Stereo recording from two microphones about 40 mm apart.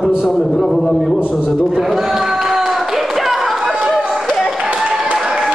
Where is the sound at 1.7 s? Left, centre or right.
Centre.